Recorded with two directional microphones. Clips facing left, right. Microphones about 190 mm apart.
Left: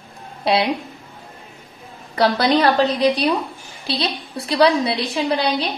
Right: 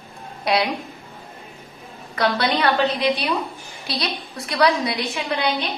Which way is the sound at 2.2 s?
35° left (ahead or behind).